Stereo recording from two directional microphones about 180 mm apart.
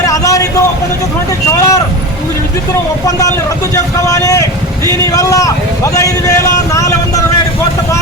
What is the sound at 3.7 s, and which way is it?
Vehicle, 20° left (ahead or behind).